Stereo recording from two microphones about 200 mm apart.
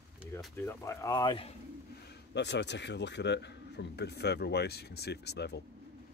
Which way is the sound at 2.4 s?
60° left (ahead or behind).